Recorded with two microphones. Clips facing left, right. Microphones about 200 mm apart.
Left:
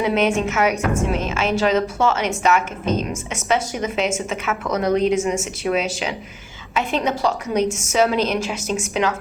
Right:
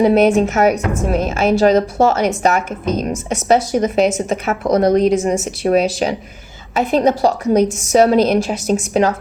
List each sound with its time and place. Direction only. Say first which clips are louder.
0.0 s a woman's voice: right 7 dB; 40° right (ahead or behind)